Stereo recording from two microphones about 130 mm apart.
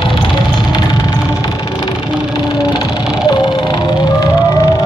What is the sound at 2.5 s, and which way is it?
Vehicle, 35° left (ahead or behind).